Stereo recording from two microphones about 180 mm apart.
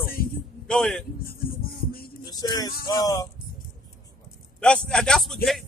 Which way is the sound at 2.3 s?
20° left (ahead or behind).